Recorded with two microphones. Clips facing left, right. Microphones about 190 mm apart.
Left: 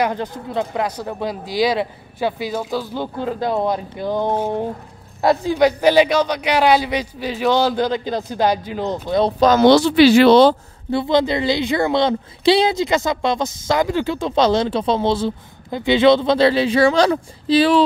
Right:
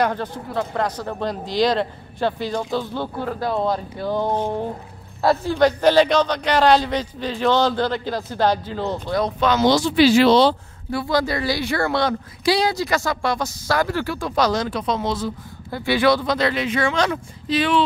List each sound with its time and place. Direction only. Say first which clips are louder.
0.0 s speech: left 1 dB; 15° left (ahead or behind)
9.6 s speech: left 4 dB; 65° left (ahead or behind)
10.9 s a woman's voice: left 4 dB; 25° left (ahead or behind)